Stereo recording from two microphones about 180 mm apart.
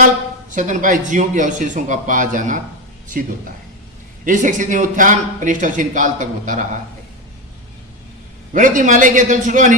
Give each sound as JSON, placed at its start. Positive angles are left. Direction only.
{"t": 0.5, "sound": "a man's voice", "side_deg": -45}
{"t": 4.3, "sound": "a man's voice", "side_deg": -45}
{"t": 8.5, "sound": "a man's voice", "side_deg": -45}